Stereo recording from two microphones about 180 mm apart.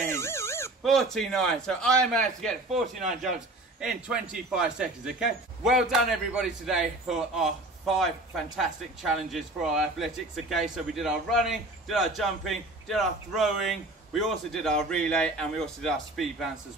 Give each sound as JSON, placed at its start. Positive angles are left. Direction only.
{"t": 0.1, "sound": "dog", "side_deg": 15}
{"t": 0.8, "sound": "speech", "side_deg": 0}